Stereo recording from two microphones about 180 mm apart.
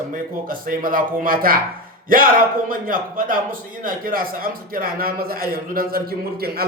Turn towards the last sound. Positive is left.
turn(degrees=-55)  # may be behind; listen again after turning